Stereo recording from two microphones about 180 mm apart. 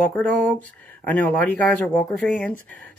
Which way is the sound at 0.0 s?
5° left (ahead or behind).